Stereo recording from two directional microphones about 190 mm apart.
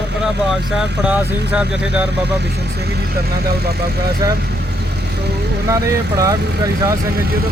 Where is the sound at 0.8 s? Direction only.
5° right (ahead or behind).